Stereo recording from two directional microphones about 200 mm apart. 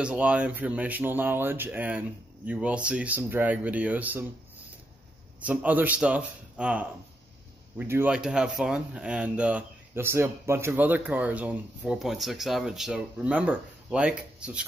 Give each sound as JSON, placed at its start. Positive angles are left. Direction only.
{"t": 0.0, "sound": "speech", "side_deg": -5}
{"t": 5.4, "sound": "speech", "side_deg": -5}